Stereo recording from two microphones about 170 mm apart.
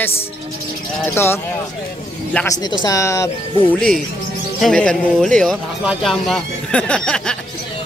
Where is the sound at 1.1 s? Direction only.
15° left (ahead or behind).